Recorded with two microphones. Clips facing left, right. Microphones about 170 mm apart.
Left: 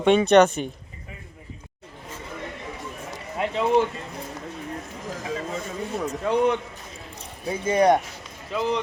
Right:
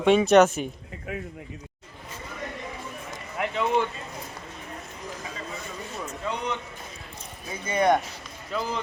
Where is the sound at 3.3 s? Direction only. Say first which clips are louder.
Left 4 dB; 25° left (ahead or behind).